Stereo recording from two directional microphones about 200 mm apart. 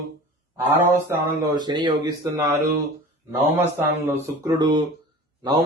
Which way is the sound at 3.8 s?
10° right (ahead or behind).